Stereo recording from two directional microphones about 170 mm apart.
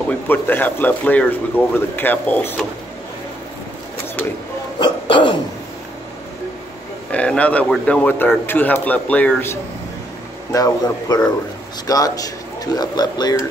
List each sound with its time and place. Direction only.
0.3 s speech: 10° left (ahead or behind)
4.7 s throat clearing: 25° left (ahead or behind)
7.1 s speech: 10° left (ahead or behind)
10.5 s speech: 20° left (ahead or behind)